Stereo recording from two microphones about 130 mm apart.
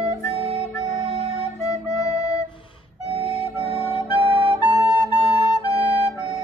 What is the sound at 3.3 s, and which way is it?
Music, 50° left (ahead or behind).